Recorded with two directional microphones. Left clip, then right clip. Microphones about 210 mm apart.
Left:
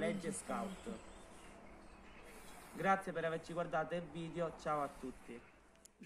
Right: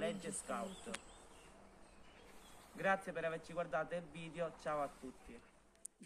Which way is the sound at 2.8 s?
5° left (ahead or behind).